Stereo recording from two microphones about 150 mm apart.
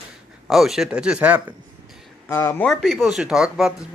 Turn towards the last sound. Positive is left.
turn(degrees=-5)  # may be behind; listen again after turning